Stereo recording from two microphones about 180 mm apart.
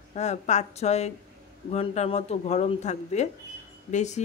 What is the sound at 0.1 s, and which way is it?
Speech, 40° left (ahead or behind).